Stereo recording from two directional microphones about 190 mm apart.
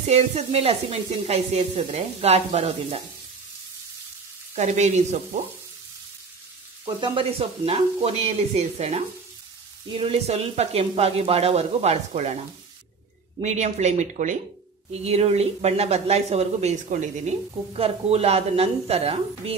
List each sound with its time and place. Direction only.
0.0 s speech: 35° right (ahead or behind)
4.6 s speech: 35° right (ahead or behind)
7.0 s speech: 30° right (ahead or behind)
13.4 s speech: 35° right (ahead or behind)